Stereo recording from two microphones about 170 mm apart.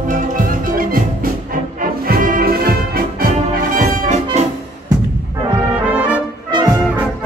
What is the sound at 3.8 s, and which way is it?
Brass instrument, 45° right (ahead or behind).